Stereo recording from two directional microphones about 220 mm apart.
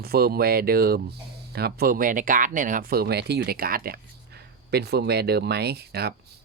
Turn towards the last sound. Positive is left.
turn(degrees=-45)  # may be behind; listen again after turning